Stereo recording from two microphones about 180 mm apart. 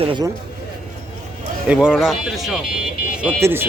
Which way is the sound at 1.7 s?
5° right (ahead or behind).